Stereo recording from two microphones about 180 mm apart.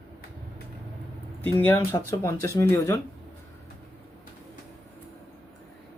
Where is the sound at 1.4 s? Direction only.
10° left (ahead or behind).